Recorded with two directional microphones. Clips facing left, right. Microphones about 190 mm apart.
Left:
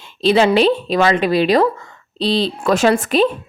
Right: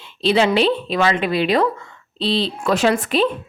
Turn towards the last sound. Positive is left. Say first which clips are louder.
# left 3 dB
turn(degrees=45)  # may be behind; listen again after turning